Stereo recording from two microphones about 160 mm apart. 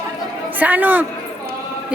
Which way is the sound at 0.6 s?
10° right (ahead or behind).